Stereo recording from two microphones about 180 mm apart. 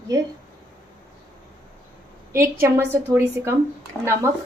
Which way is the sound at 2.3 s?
15° right (ahead or behind).